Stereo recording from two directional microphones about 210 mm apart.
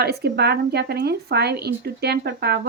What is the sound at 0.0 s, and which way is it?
Speech, 50° right (ahead or behind).